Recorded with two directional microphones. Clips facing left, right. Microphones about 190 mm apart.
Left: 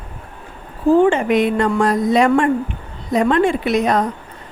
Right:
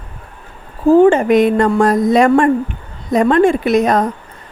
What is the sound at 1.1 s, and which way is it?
Speech, 45° right (ahead or behind).